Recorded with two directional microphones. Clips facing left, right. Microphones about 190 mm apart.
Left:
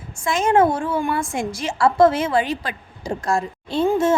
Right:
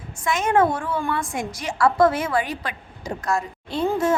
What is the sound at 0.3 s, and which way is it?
A woman's voice, 30° left (ahead or behind).